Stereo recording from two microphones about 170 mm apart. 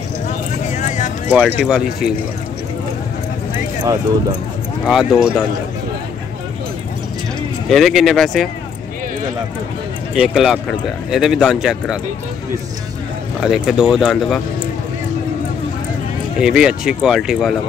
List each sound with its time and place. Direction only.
0.7 s a sound: 45° left (ahead or behind)
1.6 s speech: 5° right (ahead or behind)
4.8 s speech: 5° right (ahead or behind)
7.7 s speech: centre (ahead or behind)
10.1 s speech: 5° right (ahead or behind)
13.4 s speech: 5° right (ahead or behind)
16.3 s speech: 5° right (ahead or behind)